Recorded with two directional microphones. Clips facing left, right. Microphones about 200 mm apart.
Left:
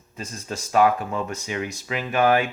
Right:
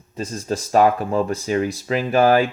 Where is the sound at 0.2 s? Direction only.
35° right (ahead or behind).